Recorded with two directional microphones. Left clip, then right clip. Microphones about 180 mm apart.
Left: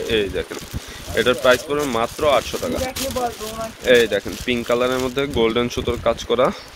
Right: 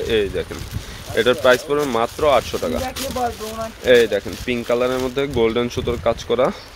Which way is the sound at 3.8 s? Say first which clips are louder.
Right 1 dB; 5° right (ahead or behind).